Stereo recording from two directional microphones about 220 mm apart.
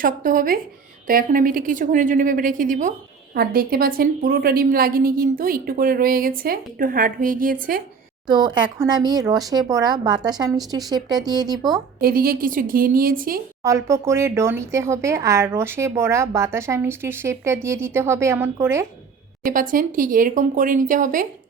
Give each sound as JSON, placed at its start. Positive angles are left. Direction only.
{"t": 0.0, "sound": "a woman's voice", "side_deg": -40}
{"t": 8.3, "sound": "speech", "side_deg": -20}
{"t": 11.9, "sound": "a woman's voice", "side_deg": -40}
{"t": 13.6, "sound": "speech", "side_deg": -15}
{"t": 19.5, "sound": "a woman's voice", "side_deg": -40}